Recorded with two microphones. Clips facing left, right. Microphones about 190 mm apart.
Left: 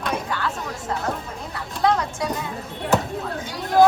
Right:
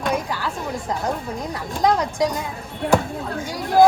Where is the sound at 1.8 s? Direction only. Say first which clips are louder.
Right 2 dB; 15° right (ahead or behind).